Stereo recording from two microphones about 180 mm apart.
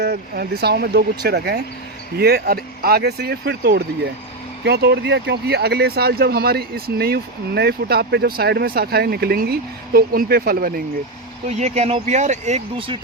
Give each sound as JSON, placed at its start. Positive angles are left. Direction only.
{"t": 0.0, "sound": "speech", "side_deg": -60}
{"t": 11.4, "sound": "speech", "side_deg": -35}